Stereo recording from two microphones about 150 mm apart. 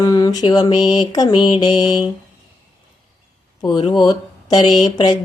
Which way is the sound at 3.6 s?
30° left (ahead or behind).